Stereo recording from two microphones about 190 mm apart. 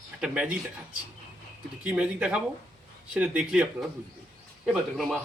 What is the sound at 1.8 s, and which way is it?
Speech, 5° right (ahead or behind).